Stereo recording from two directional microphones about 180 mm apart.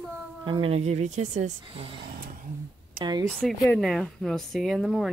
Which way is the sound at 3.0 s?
25° right (ahead or behind).